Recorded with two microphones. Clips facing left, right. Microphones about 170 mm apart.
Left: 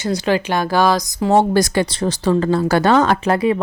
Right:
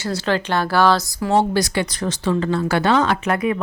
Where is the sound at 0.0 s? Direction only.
15° left (ahead or behind).